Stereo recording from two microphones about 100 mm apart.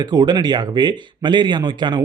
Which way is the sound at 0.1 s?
45° right (ahead or behind).